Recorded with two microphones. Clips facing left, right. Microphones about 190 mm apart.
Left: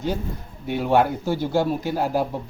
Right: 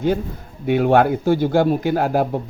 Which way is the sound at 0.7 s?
60° right (ahead or behind).